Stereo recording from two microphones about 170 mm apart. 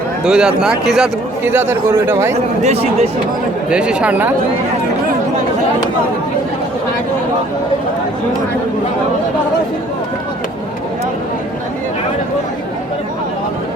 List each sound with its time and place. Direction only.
0.3 s a man's voice: 5° right (ahead or behind)
2.6 s speech: 40° right (ahead or behind)
3.7 s speech: 5° right (ahead or behind)